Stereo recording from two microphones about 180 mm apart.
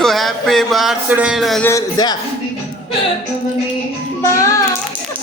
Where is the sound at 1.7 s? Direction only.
20° left (ahead or behind).